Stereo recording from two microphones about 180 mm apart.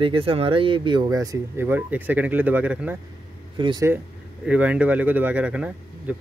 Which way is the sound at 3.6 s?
25° right (ahead or behind).